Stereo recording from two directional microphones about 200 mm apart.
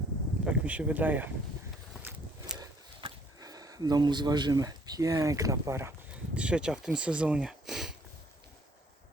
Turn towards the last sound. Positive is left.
turn(degrees=0)  # may be behind; listen again after turning